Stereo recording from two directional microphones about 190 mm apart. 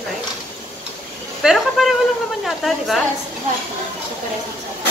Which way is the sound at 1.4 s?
Centre (ahead or behind).